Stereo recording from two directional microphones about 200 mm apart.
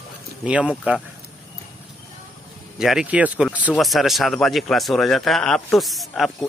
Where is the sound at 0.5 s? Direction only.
5° right (ahead or behind).